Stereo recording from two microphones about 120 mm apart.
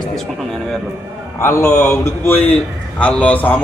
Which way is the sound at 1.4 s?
25° left (ahead or behind).